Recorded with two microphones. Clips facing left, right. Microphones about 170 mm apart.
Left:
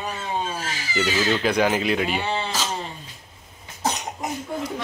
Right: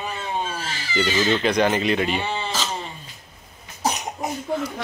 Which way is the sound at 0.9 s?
5° left (ahead or behind).